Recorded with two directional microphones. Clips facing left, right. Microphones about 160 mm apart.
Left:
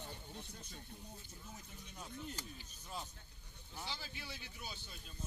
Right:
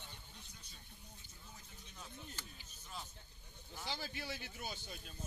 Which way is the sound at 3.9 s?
45° right (ahead or behind).